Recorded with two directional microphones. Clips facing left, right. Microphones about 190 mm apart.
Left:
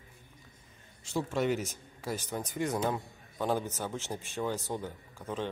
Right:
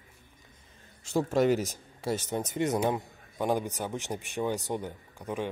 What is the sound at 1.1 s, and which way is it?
A man's voice, 40° right (ahead or behind).